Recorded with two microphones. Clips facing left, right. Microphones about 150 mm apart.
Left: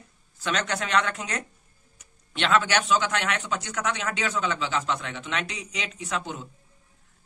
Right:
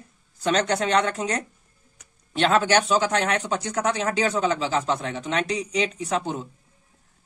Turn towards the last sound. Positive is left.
turn(degrees=-35)  # may be behind; listen again after turning